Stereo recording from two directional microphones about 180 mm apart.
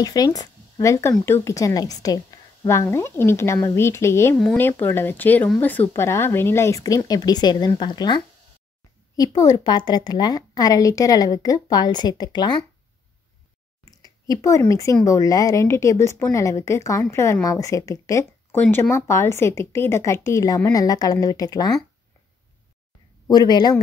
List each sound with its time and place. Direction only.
0.0 s a woman's voice: 20° left (ahead or behind)
13.8 s speech: 20° left (ahead or behind)
23.2 s a woman's voice: 20° left (ahead or behind)